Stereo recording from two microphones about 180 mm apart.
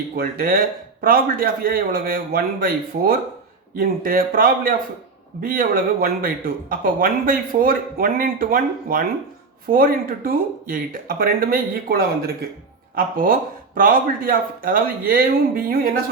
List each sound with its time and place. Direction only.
0.2 s speech: 55° right (ahead or behind)